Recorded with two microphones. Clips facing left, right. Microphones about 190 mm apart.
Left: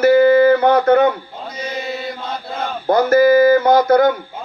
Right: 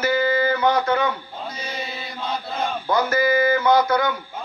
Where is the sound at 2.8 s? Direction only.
50° left (ahead or behind).